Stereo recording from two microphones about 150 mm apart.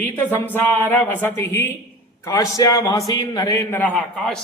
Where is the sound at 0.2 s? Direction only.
15° left (ahead or behind).